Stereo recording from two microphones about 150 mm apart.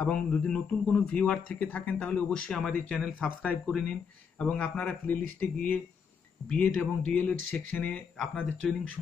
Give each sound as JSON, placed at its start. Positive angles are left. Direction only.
{"t": 0.0, "sound": "speech", "side_deg": 10}
{"t": 3.0, "sound": "speech", "side_deg": -5}
{"t": 3.6, "sound": "speech", "side_deg": 5}